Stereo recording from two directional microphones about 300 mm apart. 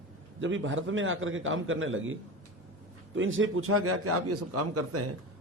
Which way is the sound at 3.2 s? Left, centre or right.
Right.